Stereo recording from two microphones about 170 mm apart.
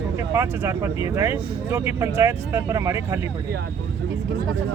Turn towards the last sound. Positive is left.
turn(degrees=-20)  # may be behind; listen again after turning